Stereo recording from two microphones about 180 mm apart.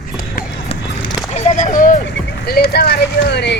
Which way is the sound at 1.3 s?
40° left (ahead or behind).